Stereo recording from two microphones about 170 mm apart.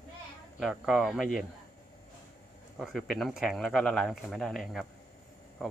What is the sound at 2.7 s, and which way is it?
Speech, centre (ahead or behind).